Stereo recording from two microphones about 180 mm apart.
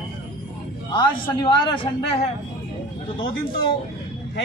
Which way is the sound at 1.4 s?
25° left (ahead or behind).